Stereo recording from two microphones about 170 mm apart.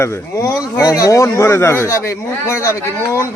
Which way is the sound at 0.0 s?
15° left (ahead or behind).